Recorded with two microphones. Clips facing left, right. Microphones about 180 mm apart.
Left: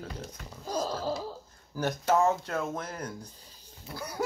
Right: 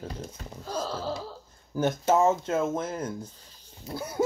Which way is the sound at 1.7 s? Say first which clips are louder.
Right 3 dB; 25° right (ahead or behind).